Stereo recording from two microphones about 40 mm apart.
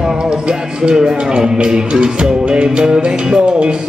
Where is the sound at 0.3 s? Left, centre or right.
Right.